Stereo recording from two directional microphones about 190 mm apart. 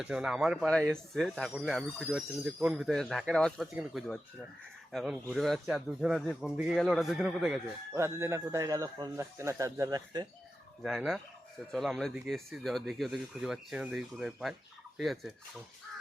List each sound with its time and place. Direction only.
0.0 s speech: 5° right (ahead or behind)
7.9 s speech: 15° right (ahead or behind)
10.8 s speech: centre (ahead or behind)